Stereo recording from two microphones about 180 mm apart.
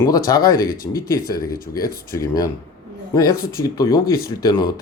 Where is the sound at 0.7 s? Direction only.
55° left (ahead or behind).